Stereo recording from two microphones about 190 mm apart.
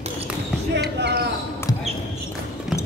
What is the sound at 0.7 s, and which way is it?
Basketball bounce, 60° right (ahead or behind).